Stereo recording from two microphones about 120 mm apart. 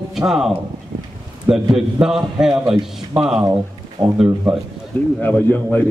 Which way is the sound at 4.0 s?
30° right (ahead or behind).